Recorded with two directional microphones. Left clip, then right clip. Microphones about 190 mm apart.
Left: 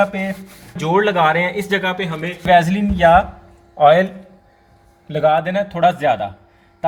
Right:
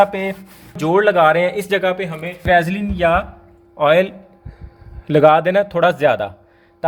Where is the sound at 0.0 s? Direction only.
40° right (ahead or behind).